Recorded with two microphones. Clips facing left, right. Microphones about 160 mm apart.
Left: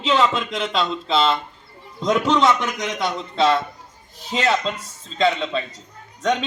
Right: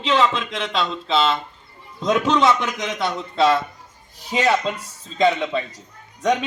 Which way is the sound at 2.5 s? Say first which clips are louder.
Even; 5° right (ahead or behind).